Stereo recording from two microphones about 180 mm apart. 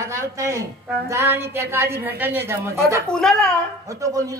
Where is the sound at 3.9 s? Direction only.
20° right (ahead or behind).